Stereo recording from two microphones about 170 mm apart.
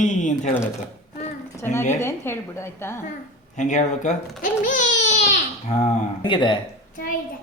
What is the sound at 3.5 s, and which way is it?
Speech, 45° left (ahead or behind).